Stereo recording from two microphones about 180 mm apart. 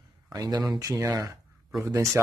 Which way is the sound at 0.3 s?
20° right (ahead or behind).